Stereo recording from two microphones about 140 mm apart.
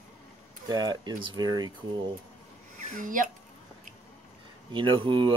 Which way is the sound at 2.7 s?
65° right (ahead or behind).